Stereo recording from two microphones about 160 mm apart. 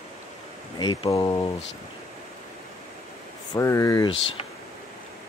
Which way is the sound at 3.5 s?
20° left (ahead or behind).